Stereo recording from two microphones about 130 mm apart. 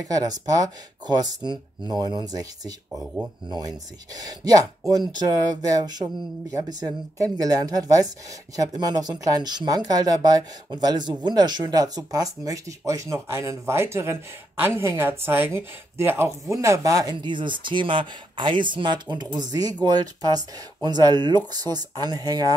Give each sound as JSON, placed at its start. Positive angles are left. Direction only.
{"t": 0.0, "sound": "speech", "side_deg": -30}
{"t": 2.9, "sound": "speech", "side_deg": -5}
{"t": 3.4, "sound": "speech", "side_deg": -30}